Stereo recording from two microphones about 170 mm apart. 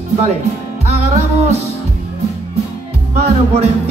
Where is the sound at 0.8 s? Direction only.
40° right (ahead or behind).